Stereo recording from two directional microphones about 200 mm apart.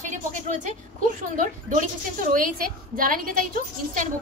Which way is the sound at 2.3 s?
45° right (ahead or behind).